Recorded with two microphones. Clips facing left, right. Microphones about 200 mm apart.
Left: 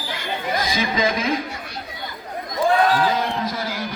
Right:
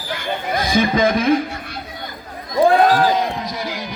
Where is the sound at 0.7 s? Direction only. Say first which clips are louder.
Right 8 dB; 50° right (ahead or behind).